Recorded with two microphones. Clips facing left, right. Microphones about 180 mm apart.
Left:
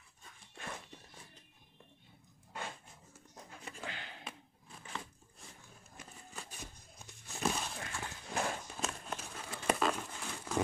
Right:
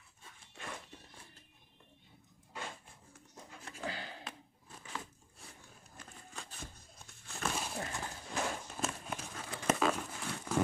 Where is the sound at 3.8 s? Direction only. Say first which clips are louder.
Right 6 dB; 35° right (ahead or behind).